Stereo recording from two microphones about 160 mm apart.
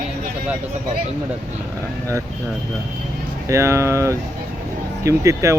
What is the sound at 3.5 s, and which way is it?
Speech, 15° right (ahead or behind).